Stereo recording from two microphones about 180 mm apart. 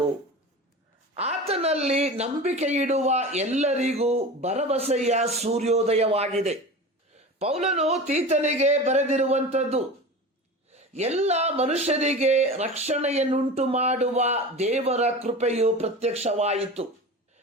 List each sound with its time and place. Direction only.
1.1 s speech: 35° right (ahead or behind)